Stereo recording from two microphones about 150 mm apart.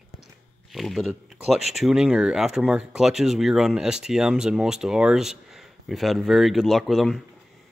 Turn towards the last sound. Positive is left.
turn(degrees=0)  # may be behind; listen again after turning